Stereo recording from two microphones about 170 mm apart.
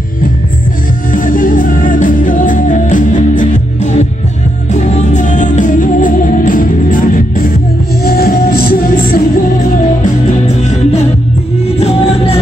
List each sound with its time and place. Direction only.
1.1 s music: 55° left (ahead or behind)